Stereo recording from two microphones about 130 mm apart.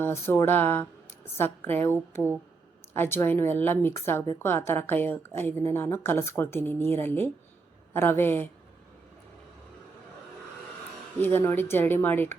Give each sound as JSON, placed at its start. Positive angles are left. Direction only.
{"t": 0.0, "sound": "speech", "side_deg": 20}
{"t": 11.2, "sound": "speech", "side_deg": 15}